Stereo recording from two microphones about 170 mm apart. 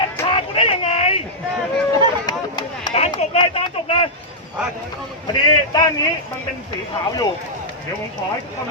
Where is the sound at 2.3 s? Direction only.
25° left (ahead or behind).